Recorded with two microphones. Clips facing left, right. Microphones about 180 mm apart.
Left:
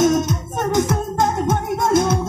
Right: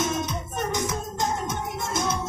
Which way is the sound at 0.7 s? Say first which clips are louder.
Left 13 dB; 55° left (ahead or behind).